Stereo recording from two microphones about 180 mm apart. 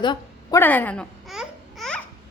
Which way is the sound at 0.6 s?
10° left (ahead or behind).